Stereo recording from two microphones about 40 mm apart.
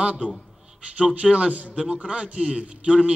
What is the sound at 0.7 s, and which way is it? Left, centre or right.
A man's voice, right.